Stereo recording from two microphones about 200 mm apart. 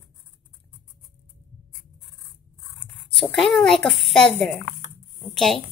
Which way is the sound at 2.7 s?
25° left (ahead or behind).